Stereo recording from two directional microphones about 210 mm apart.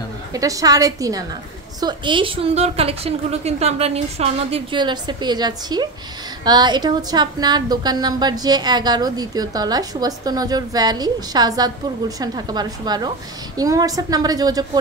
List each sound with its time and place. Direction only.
0.3 s a woman's voice: 15° right (ahead or behind)